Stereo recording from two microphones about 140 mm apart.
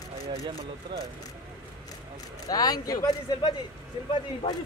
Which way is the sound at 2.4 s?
25° left (ahead or behind).